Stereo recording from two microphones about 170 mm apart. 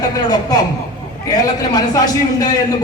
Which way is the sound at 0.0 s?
25° left (ahead or behind).